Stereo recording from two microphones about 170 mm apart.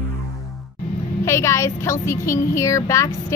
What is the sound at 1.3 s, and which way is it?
Speech, 15° left (ahead or behind).